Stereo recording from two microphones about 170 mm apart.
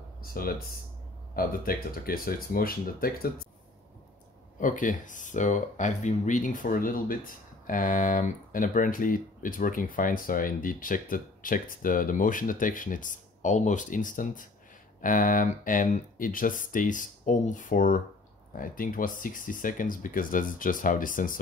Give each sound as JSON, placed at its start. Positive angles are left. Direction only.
{"t": 0.2, "sound": "speech", "side_deg": 60}
{"t": 4.6, "sound": "speech", "side_deg": 50}